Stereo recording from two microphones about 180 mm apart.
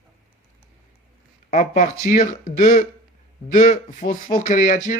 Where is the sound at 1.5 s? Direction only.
45° left (ahead or behind).